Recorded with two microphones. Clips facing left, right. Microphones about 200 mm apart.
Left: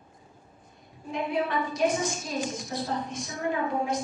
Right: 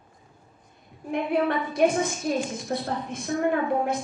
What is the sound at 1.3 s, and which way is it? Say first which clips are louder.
A woman's voice: right 4 dB; 60° right (ahead or behind).